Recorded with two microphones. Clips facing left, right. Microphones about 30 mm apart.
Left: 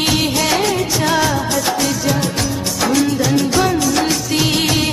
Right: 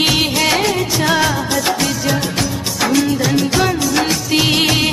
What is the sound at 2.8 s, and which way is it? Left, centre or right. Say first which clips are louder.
Music: right 1 dB; centre.